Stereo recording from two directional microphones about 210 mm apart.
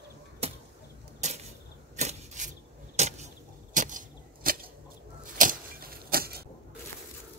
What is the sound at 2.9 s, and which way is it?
Vehicle, 35° right (ahead or behind).